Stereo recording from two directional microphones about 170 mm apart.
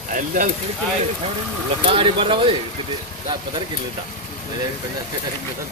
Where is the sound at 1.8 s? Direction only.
30° right (ahead or behind).